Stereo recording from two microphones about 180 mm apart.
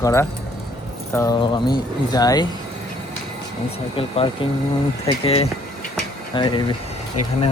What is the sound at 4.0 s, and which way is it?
Speech, 30° left (ahead or behind).